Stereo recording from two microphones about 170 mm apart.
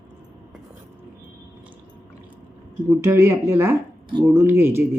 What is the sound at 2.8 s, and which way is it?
Speech, 15° right (ahead or behind).